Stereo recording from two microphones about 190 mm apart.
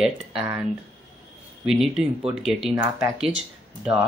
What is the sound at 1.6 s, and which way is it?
Speech, centre (ahead or behind).